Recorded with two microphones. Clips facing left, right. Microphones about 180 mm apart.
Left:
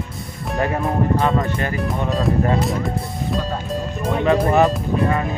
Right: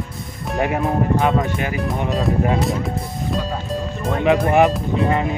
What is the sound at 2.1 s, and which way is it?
Speech, centre (ahead or behind).